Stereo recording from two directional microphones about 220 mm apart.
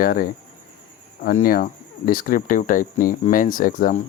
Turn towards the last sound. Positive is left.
turn(degrees=40)  # may be behind; listen again after turning